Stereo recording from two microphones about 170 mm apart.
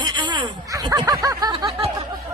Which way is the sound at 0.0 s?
25° right (ahead or behind).